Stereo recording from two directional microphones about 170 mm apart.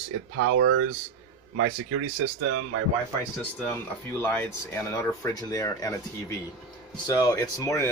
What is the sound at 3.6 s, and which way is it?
Speech, 10° left (ahead or behind).